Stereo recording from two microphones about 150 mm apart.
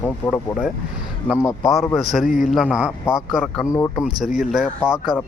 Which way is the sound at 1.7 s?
Centre (ahead or behind).